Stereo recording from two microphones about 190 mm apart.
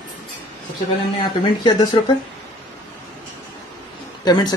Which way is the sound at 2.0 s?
25° left (ahead or behind).